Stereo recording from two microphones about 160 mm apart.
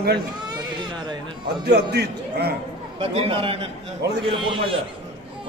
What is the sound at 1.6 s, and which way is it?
Speech, 90° right.